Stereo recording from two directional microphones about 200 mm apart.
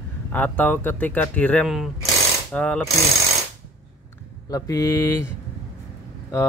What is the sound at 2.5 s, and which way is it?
Ratchet, 5° left (ahead or behind).